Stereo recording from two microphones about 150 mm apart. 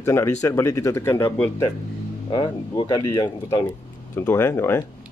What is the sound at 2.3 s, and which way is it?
Speech, 30° left (ahead or behind).